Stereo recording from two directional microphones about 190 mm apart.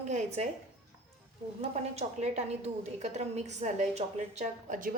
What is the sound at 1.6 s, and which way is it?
A woman's voice, 35° right (ahead or behind).